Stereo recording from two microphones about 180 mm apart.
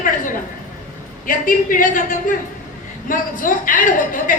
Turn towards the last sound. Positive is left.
turn(degrees=50)  # may be behind; listen again after turning